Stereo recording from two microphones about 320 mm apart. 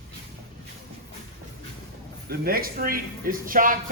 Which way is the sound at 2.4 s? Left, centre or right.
Right.